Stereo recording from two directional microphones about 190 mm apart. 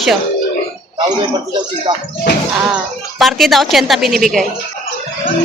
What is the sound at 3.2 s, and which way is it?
A woman's voice, centre (ahead or behind).